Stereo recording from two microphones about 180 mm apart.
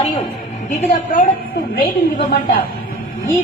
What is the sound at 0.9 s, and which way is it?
A woman's voice, 50° left (ahead or behind).